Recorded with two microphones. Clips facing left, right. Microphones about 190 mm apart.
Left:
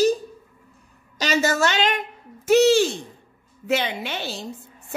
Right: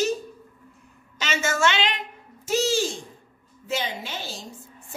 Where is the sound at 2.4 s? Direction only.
65° left (ahead or behind).